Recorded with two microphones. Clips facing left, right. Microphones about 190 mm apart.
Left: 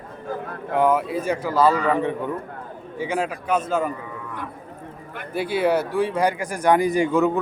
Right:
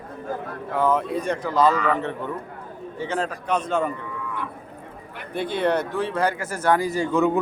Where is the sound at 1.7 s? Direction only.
35° left (ahead or behind).